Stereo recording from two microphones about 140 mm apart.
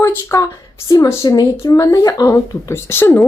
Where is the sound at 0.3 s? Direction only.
20° left (ahead or behind).